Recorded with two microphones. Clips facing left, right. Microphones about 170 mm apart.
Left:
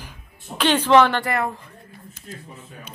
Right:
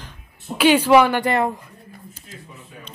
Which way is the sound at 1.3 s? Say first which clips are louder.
Right 4 dB; 25° right (ahead or behind).